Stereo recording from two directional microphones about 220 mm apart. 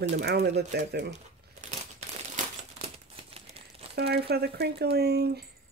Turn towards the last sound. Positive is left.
turn(degrees=-45)  # may be behind; listen again after turning